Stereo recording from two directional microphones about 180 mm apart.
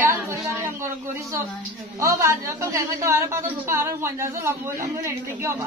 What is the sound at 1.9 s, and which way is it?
A woman's voice, 15° right (ahead or behind).